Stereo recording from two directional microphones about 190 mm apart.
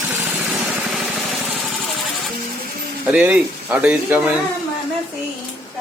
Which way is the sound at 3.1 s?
5° right (ahead or behind).